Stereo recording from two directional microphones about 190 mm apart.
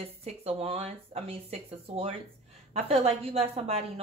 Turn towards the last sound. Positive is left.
turn(degrees=-35)  # may be behind; listen again after turning